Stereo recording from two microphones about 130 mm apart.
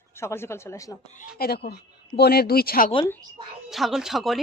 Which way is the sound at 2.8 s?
90° left.